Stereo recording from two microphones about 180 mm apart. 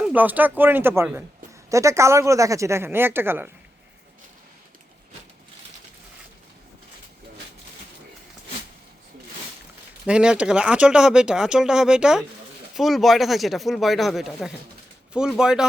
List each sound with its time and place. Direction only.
0.0 s speech: 10° right (ahead or behind)
10.1 s speech: 5° right (ahead or behind)